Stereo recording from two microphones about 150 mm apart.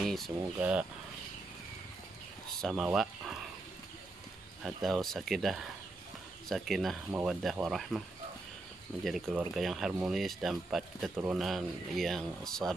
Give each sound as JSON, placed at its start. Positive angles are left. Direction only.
{"t": 0.0, "sound": "a sound", "side_deg": 0}
{"t": 0.6, "sound": "speech", "side_deg": -10}
{"t": 2.6, "sound": "speech", "side_deg": -5}
{"t": 4.6, "sound": "speech", "side_deg": 0}
{"t": 7.1, "sound": "speech", "side_deg": -10}
{"t": 7.4, "sound": "speech", "side_deg": 0}
{"t": 9.0, "sound": "speech", "side_deg": 0}